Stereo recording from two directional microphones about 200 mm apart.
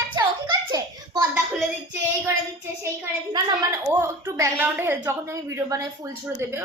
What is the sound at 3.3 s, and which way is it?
A woman's voice, 15° right (ahead or behind).